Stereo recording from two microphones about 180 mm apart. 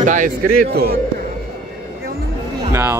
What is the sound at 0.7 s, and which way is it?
Speech, 60° right (ahead or behind).